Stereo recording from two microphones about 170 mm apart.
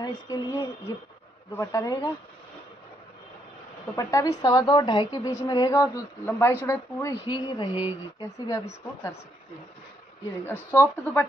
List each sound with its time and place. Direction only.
0.0 s a woman's voice: 25° left (ahead or behind)
3.9 s a woman's voice: 20° left (ahead or behind)
7.7 s speech: 10° right (ahead or behind)
8.2 s a woman's voice: 20° left (ahead or behind)
10.4 s speech: 15° left (ahead or behind)